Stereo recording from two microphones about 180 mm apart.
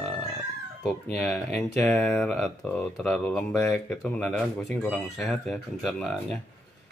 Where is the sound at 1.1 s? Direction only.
5° left (ahead or behind).